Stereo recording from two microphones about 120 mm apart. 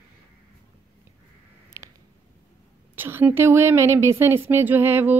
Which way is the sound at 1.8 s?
30° right (ahead or behind).